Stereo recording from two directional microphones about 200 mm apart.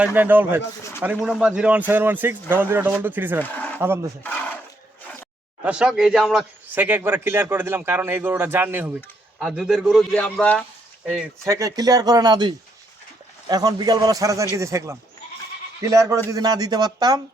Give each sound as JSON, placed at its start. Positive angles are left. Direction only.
{"t": 0.0, "sound": "a man's voice", "side_deg": -10}
{"t": 3.4, "sound": "speech", "side_deg": 10}
{"t": 3.8, "sound": "a man's voice", "side_deg": -10}
{"t": 4.2, "sound": "speech", "side_deg": 10}
{"t": 5.6, "sound": "a man's voice", "side_deg": -5}
{"t": 11.4, "sound": "a man's voice", "side_deg": -15}